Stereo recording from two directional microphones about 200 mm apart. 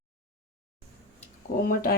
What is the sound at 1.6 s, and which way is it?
Speech, 45° left (ahead or behind).